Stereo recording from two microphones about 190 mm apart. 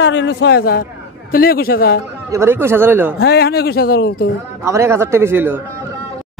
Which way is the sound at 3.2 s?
55° left (ahead or behind).